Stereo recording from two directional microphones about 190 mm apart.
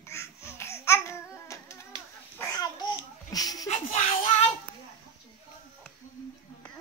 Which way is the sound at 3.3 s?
20° left (ahead or behind).